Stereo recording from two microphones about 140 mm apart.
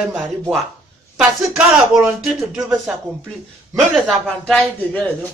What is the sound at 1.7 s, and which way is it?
Speech, 10° right (ahead or behind).